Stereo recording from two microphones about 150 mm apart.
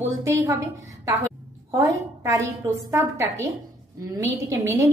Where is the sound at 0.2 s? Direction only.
20° right (ahead or behind).